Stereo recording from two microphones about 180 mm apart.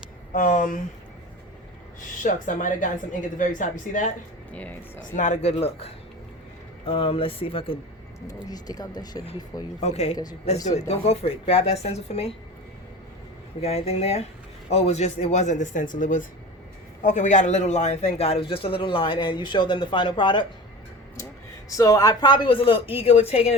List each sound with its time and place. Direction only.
0.3 s speech: 45° left (ahead or behind)
2.2 s speech: 45° left (ahead or behind)
4.5 s speech: 10° left (ahead or behind)
5.1 s a man's voice: 40° left (ahead or behind); by 9.2 s 20° left (ahead or behind)
9.8 s speech: 35° left (ahead or behind)
13.6 s a man's voice: 35° left (ahead or behind)
21.7 s a man's voice: 20° left (ahead or behind); by 23.6 s 35° left (ahead or behind)